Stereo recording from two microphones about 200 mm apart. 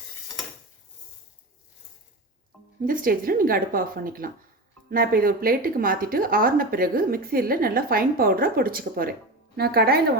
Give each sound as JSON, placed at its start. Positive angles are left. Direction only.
{"t": 2.8, "sound": "a woman's voice", "side_deg": -45}